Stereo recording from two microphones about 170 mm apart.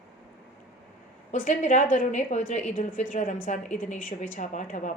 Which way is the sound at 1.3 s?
50° left (ahead or behind).